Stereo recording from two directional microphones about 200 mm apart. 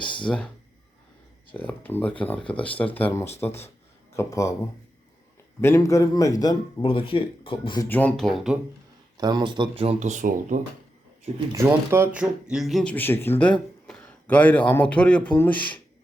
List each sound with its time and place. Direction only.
0.2 s speech: 5° left (ahead or behind)
1.5 s speech: 10° left (ahead or behind)
5.5 s speech: 15° left (ahead or behind)
7.9 s speech: 10° left (ahead or behind)
9.1 s speech: 20° right (ahead or behind); by 10.6 s 40° right (ahead or behind)
11.5 s speech: 10° right (ahead or behind); by 15.8 s 5° left (ahead or behind)